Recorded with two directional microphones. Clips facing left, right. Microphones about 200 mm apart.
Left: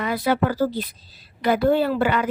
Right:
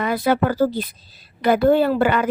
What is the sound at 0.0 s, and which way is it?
Speech, 50° right (ahead or behind).